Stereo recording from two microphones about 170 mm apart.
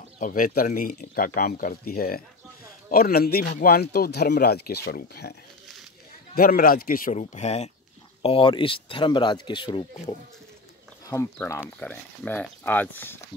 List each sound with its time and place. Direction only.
0.2 s speech: 55° left (ahead or behind)
6.3 s speech: 60° left (ahead or behind); by 9.8 s 30° left (ahead or behind)
11.3 s speech: 15° left (ahead or behind)